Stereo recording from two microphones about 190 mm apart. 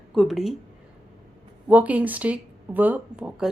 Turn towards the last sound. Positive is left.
turn(degrees=-5)  # may be behind; listen again after turning